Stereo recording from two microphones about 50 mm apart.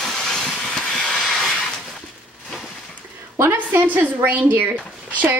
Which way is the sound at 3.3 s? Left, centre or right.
Right.